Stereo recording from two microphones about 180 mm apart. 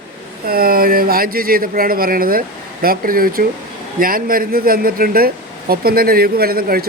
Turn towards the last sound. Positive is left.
turn(degrees=-55)  # may be behind; listen again after turning